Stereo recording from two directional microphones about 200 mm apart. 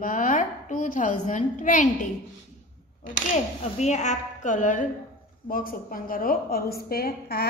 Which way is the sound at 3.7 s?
35° left (ahead or behind).